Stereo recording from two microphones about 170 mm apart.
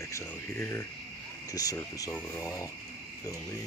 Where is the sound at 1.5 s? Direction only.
20° left (ahead or behind).